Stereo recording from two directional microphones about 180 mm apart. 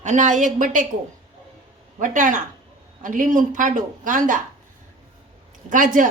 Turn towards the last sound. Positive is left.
turn(degrees=-45)  # may be behind; listen again after turning